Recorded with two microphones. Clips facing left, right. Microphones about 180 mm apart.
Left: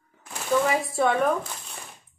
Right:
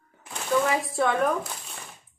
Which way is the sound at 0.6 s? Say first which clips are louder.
Left 1 dB; 5° left (ahead or behind).